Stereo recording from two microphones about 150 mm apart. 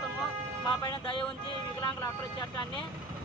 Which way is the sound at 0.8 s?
30° left (ahead or behind).